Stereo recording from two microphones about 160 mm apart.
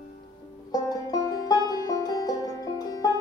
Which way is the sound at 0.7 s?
25° left (ahead or behind).